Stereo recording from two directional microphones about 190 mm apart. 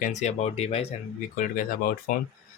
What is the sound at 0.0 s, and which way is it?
Speech, 40° left (ahead or behind).